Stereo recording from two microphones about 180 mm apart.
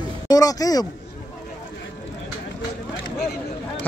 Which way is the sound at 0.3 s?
20° left (ahead or behind).